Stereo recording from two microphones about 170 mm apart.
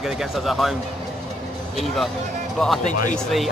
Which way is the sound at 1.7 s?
Centre (ahead or behind).